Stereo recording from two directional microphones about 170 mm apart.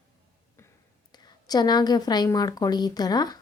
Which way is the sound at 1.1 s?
25° left (ahead or behind).